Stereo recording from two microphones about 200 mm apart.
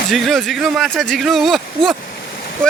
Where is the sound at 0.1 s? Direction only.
Centre (ahead or behind).